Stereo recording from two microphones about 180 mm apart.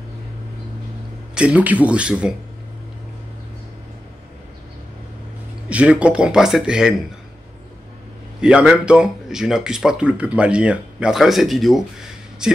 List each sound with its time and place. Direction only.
1.3 s speech: 5° right (ahead or behind)
5.7 s speech: 5° right (ahead or behind)
8.4 s speech: 5° right (ahead or behind)